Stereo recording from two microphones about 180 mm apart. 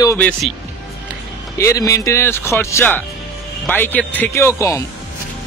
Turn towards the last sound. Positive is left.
turn(degrees=15)  # may be behind; listen again after turning